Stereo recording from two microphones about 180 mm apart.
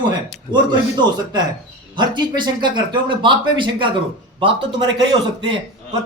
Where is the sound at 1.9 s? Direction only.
25° right (ahead or behind).